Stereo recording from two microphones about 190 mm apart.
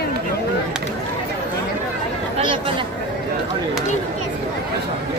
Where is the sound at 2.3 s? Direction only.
25° right (ahead or behind).